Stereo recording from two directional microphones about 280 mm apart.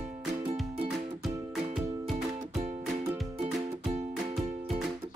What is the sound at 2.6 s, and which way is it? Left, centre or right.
Music, right.